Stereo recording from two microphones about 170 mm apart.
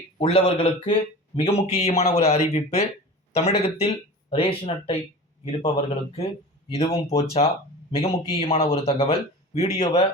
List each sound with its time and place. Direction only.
0.2 s speech: 30° left (ahead or behind)